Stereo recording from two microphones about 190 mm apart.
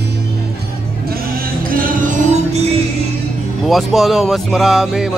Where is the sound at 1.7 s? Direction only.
50° right (ahead or behind).